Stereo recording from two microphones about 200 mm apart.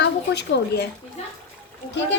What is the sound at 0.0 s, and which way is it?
Speech, 60° left (ahead or behind).